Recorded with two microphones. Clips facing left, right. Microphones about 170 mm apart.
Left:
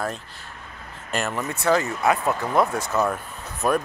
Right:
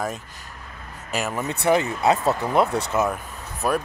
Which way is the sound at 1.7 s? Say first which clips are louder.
Right 1 dB; 20° right (ahead or behind).